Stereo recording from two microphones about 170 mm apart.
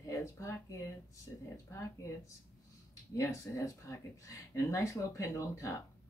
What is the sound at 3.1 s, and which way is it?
Speech, 20° left (ahead or behind).